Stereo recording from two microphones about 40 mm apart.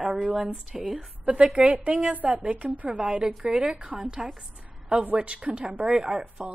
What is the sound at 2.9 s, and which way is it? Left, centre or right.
A woman's voice, right.